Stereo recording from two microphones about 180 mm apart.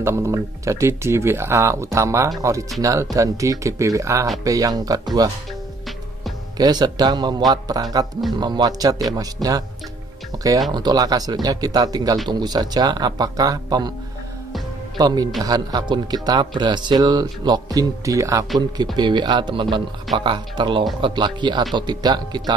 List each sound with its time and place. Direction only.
0.0 s speech: 15° right (ahead or behind)
6.6 s speech: 20° right (ahead or behind)
15.0 s speech: 20° right (ahead or behind)